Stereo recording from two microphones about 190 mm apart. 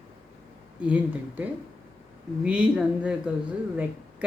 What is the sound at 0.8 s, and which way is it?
Speech, 10° right (ahead or behind).